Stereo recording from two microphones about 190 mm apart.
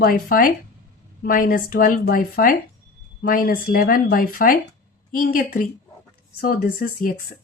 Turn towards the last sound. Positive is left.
turn(degrees=50)  # may be behind; listen again after turning